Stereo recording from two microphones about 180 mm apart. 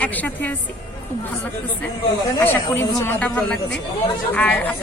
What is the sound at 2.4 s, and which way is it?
Speech, 10° left (ahead or behind).